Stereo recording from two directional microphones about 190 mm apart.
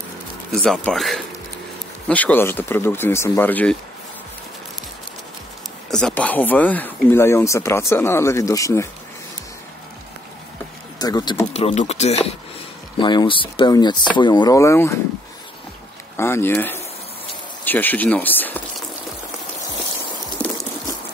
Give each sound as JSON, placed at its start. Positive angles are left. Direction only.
{"t": 0.6, "sound": "speech", "side_deg": 0}
{"t": 5.9, "sound": "speech", "side_deg": 5}
{"t": 11.0, "sound": "speech", "side_deg": 20}
{"t": 11.5, "sound": "speech", "side_deg": 35}
{"t": 16.2, "sound": "speech", "side_deg": 15}
{"t": 17.6, "sound": "liquid", "side_deg": 10}
{"t": 20.4, "sound": "a sound", "side_deg": 5}